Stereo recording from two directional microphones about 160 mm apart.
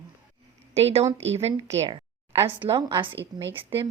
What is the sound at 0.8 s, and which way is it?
Speech, 40° right (ahead or behind).